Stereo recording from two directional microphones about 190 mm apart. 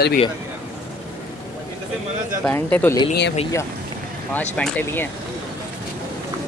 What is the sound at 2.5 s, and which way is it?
Speech, 10° left (ahead or behind).